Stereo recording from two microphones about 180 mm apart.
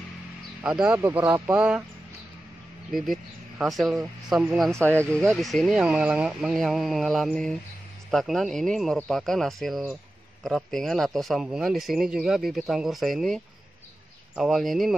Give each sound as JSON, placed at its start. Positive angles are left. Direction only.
{"t": 0.6, "sound": "speech", "side_deg": -5}
{"t": 0.9, "sound": "speech", "side_deg": -15}
{"t": 2.9, "sound": "speech", "side_deg": 0}